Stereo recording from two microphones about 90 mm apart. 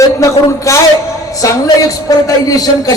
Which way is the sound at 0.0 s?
35° left (ahead or behind).